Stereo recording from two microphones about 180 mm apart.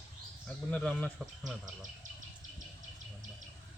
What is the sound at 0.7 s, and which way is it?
Speech, 10° left (ahead or behind).